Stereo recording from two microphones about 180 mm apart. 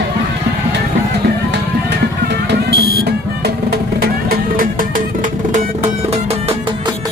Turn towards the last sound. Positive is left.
turn(degrees=-35)  # may be behind; listen again after turning